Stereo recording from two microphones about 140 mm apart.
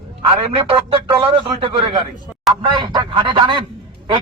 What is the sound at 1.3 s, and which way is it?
Speech, 35° right (ahead or behind).